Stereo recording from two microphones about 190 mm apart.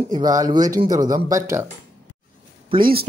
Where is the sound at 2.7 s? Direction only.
25° right (ahead or behind).